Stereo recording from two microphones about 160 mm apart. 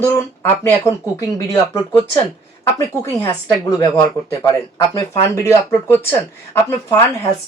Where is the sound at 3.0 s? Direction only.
20° left (ahead or behind).